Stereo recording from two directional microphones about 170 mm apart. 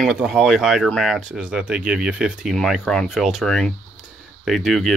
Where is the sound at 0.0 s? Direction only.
5° right (ahead or behind).